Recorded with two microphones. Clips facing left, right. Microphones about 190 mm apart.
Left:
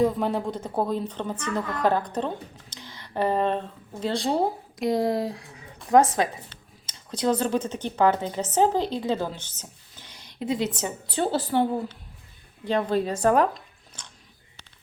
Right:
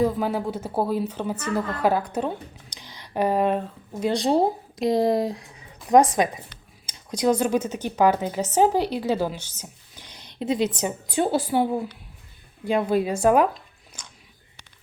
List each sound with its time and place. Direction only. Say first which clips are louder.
0.0 s a woman's voice: even; centre (ahead or behind)